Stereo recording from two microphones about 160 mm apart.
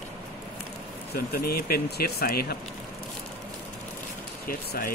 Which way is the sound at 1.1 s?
70° left (ahead or behind).